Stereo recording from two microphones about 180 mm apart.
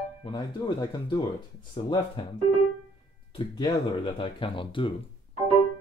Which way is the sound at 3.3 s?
25° left (ahead or behind).